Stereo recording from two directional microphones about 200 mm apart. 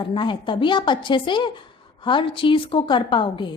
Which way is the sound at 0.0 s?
25° left (ahead or behind).